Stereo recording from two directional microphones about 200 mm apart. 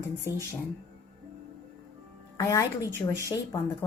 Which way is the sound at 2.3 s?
15° left (ahead or behind).